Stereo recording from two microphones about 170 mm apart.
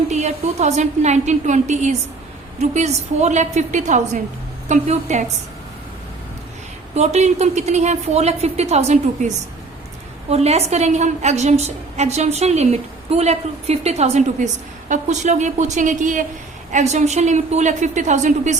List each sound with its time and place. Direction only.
0.1 s a woman's voice: 40° right (ahead or behind)
6.9 s a woman's voice: 40° right (ahead or behind)